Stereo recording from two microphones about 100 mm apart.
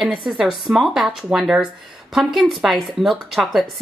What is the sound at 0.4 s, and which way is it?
Speech, 5° right (ahead or behind).